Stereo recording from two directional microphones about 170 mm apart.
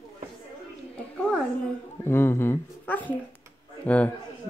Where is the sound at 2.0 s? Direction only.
15° left (ahead or behind).